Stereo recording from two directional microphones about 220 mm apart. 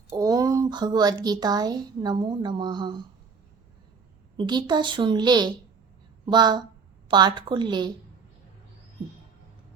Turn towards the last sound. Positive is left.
turn(degrees=-20)  # may be behind; listen again after turning